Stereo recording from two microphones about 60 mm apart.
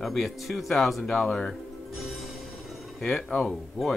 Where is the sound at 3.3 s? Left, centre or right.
Centre.